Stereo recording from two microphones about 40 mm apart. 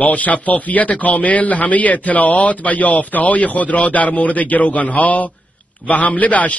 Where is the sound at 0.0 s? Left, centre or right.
Left.